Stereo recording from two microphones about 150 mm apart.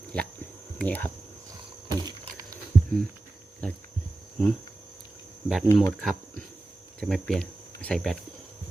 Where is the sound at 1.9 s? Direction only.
25° right (ahead or behind).